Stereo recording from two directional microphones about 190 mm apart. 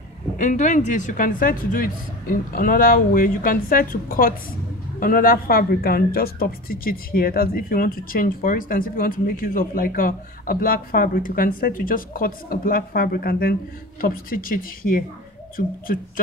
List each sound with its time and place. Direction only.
0.4 s speech: 40° left (ahead or behind)